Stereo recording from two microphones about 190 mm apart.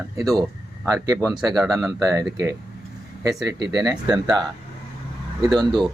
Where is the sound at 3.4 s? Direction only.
20° right (ahead or behind).